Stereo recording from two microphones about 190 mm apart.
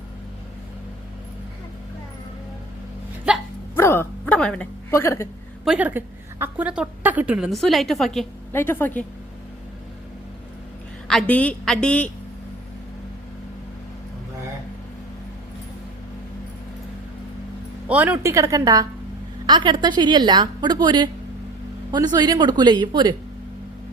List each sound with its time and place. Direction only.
3.8 s a sound: 10° left (ahead or behind)
5.6 s a woman's voice: 5° right (ahead or behind); by 9.0 s 10° left (ahead or behind)
11.1 s a woman's voice: 5° left (ahead or behind)
17.8 s a woman's voice: 10° right (ahead or behind)